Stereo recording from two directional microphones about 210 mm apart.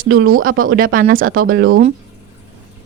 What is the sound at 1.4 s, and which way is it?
Speech, 75° right (ahead or behind).